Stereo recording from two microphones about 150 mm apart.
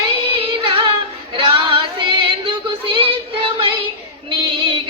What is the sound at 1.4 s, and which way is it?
Female singing, 35° right (ahead or behind).